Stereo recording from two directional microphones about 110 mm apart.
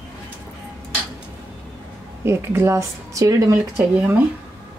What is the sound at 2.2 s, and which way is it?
Speech, 20° right (ahead or behind).